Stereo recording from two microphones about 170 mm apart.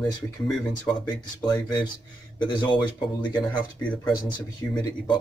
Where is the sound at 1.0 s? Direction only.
25° left (ahead or behind).